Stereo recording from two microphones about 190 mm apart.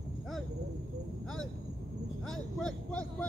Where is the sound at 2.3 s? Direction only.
5° left (ahead or behind).